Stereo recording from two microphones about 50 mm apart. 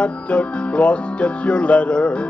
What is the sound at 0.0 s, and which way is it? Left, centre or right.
Music, left.